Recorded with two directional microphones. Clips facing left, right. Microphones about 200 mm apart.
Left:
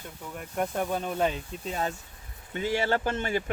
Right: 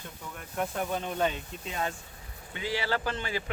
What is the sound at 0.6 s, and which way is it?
Speech, 10° left (ahead or behind).